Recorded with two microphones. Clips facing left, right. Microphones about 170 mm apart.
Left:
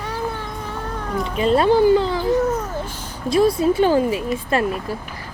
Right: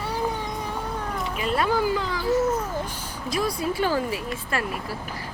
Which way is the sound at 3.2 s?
25° left (ahead or behind).